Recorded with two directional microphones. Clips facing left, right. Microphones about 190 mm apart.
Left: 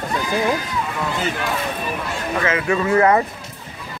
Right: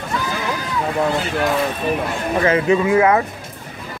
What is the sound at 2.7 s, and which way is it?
Speech, 10° right (ahead or behind).